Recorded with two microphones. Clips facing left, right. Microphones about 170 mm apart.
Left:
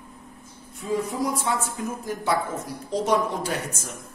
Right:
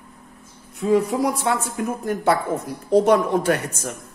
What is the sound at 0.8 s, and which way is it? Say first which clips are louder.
A woman's voice: right 7 dB; 70° right (ahead or behind).